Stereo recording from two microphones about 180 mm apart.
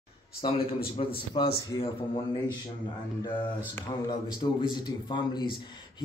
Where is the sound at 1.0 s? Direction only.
35° left (ahead or behind).